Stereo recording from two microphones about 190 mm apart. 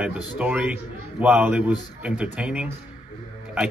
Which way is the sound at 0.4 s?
5° right (ahead or behind).